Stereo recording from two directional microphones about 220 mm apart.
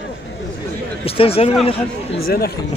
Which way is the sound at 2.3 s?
45° left (ahead or behind).